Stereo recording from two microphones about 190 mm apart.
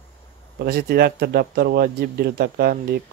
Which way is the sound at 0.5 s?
55° right (ahead or behind).